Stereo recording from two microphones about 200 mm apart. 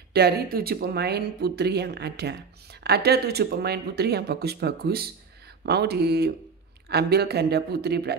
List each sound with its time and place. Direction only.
0.1 s speech: 50° right (ahead or behind)